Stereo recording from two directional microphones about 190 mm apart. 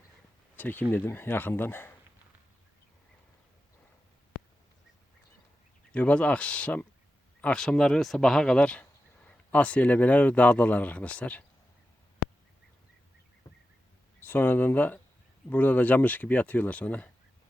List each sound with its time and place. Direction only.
0.5 s speech: 10° left (ahead or behind)
5.9 s speech: 5° left (ahead or behind)
14.2 s speech: 10° left (ahead or behind)